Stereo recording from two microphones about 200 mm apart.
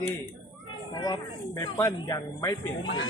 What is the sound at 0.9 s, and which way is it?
Speech, 20° left (ahead or behind).